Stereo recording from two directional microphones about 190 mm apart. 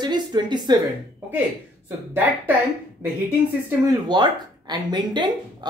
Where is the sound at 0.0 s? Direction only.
20° right (ahead or behind).